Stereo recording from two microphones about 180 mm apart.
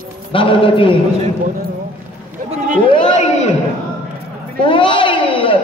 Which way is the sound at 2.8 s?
25° left (ahead or behind).